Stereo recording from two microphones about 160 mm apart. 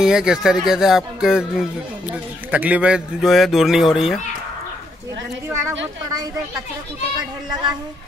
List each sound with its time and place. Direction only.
0.0 s speech: 5° right (ahead or behind)